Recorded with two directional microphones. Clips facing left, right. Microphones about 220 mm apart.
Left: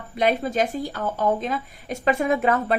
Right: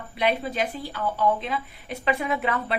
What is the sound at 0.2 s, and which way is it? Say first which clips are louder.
Speech: left 4 dB; 45° left (ahead or behind).